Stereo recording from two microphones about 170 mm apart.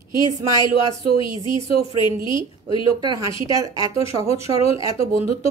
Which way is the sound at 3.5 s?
20° right (ahead or behind).